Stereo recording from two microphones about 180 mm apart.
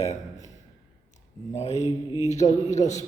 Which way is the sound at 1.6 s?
40° left (ahead or behind).